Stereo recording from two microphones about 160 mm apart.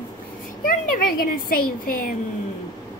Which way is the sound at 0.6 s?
65° left (ahead or behind).